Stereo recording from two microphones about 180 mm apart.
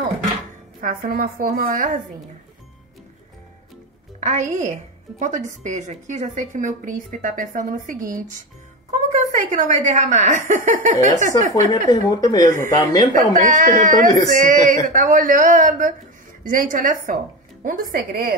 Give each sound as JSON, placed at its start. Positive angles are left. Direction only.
{"t": 0.7, "sound": "a woman's voice", "side_deg": -55}
{"t": 4.2, "sound": "a woman's voice", "side_deg": -40}
{"t": 11.9, "sound": "speech", "side_deg": 20}
{"t": 13.3, "sound": "a woman's voice", "side_deg": -45}